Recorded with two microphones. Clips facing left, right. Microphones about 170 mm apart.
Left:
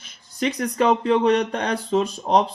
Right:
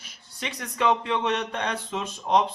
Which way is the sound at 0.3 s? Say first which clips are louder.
Left 9 dB; 40° left (ahead or behind).